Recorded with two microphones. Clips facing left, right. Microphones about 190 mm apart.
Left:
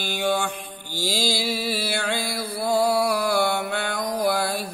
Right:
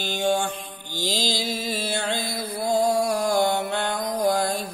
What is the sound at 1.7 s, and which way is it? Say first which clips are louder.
Mantra: left 1 dB; 10° left (ahead or behind).